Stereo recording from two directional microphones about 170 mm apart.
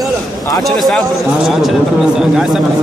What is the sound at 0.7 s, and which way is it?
Speech, centre (ahead or behind).